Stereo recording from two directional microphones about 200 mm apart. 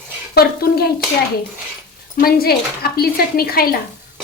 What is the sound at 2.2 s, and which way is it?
Speech, 50° left (ahead or behind).